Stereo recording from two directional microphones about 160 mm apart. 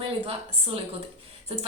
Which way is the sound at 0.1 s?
35° right (ahead or behind).